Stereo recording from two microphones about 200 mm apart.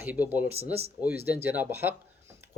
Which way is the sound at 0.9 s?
10° right (ahead or behind).